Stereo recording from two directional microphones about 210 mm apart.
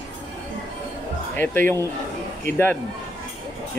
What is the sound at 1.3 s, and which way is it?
A man's voice, 10° left (ahead or behind).